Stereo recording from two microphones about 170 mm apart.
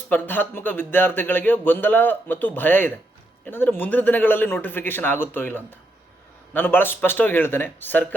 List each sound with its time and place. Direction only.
0.1 s speech: 10° left (ahead or behind)